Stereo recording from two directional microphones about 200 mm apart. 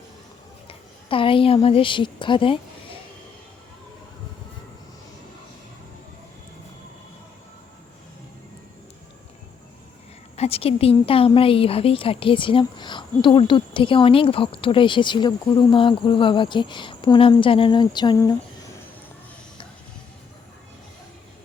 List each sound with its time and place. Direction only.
0.7 s a woman's voice: 25° left (ahead or behind)
10.3 s a woman's voice: 30° left (ahead or behind)